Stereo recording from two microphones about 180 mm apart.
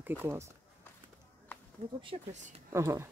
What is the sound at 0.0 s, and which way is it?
Speech, 10° right (ahead or behind).